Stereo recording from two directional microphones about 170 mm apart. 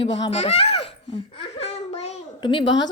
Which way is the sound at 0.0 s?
30° left (ahead or behind).